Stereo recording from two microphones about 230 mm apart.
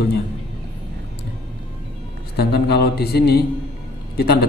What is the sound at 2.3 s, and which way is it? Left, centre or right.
Speech, left.